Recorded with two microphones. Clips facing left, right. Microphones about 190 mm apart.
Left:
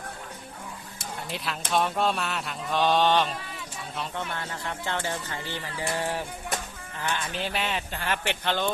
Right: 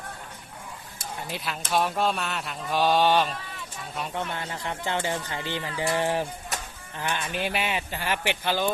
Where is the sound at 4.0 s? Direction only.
20° right (ahead or behind).